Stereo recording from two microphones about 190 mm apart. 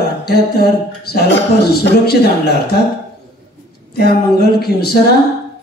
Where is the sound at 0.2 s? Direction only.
55° left (ahead or behind).